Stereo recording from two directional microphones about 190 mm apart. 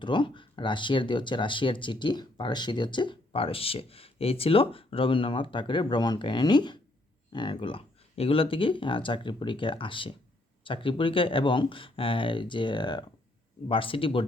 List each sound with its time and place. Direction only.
0.0 s speech: 25° left (ahead or behind)